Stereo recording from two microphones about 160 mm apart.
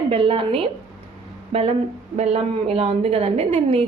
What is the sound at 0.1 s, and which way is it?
A woman's voice, 35° right (ahead or behind).